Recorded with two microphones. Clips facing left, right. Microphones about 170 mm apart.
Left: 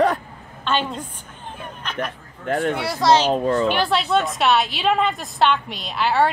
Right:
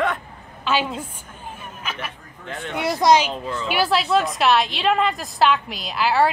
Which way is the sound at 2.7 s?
15° right (ahead or behind).